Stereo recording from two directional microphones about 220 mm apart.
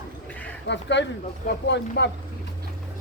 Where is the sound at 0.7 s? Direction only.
55° left (ahead or behind).